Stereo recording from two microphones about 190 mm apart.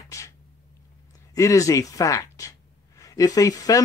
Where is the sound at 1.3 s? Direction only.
15° left (ahead or behind).